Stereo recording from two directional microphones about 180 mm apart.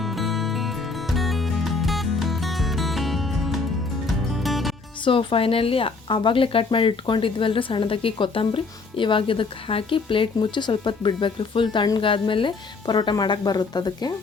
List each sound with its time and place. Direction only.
0.0 s music: centre (ahead or behind)
5.0 s speech: 30° left (ahead or behind)